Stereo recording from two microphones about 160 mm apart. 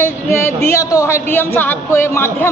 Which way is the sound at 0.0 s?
15° left (ahead or behind).